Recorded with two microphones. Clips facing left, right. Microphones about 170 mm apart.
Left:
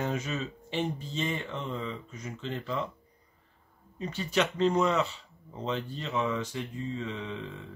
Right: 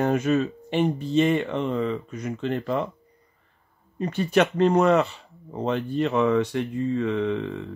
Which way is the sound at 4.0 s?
60° right (ahead or behind).